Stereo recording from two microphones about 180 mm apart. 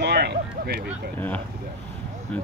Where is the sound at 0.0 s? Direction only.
65° right (ahead or behind).